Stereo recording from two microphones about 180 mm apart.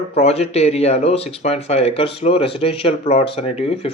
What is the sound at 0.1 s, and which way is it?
Speech, 35° left (ahead or behind).